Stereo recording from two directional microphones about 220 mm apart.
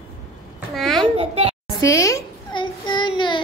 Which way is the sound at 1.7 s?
15° left (ahead or behind).